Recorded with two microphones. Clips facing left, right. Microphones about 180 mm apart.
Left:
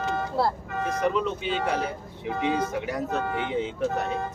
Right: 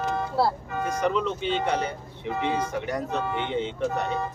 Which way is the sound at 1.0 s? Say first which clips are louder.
Right 1 dB; 5° left (ahead or behind).